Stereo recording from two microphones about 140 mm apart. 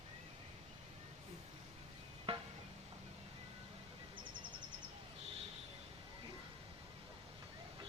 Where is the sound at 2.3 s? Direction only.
40° right (ahead or behind).